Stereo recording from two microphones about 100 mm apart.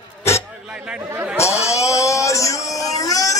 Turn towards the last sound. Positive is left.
turn(degrees=35)  # may be behind; listen again after turning